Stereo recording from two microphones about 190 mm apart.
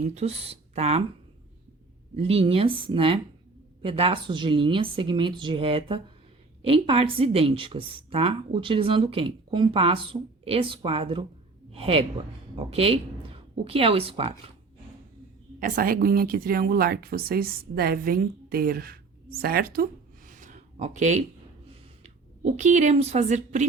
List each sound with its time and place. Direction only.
0.0 s speech: 35° right (ahead or behind)
2.1 s a woman's voice: 30° right (ahead or behind)
15.6 s speech: 45° right (ahead or behind)